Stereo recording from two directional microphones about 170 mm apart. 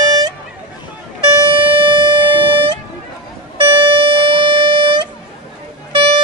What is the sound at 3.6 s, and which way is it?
Music, 30° right (ahead or behind).